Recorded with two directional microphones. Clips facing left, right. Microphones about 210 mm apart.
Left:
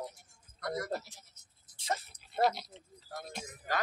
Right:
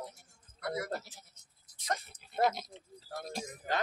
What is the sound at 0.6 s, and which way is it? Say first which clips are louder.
Speech: even; 10° right (ahead or behind).